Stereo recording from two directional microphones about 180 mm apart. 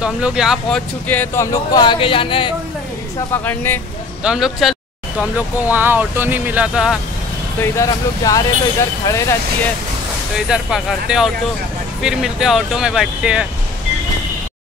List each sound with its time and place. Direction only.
0.0 s speech: 5° right (ahead or behind); by 2.5 s 30° left (ahead or behind)
3.4 s speech: 10° left (ahead or behind)
4.2 s speech: 5° right (ahead or behind)
7.6 s speech: 15° left (ahead or behind)
10.5 s speech: 5° right (ahead or behind)